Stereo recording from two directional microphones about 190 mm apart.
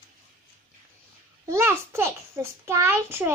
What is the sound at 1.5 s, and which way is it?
A child's voice, 15° right (ahead or behind).